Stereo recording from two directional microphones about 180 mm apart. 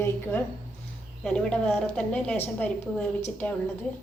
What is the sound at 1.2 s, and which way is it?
A woman's voice, 5° left (ahead or behind).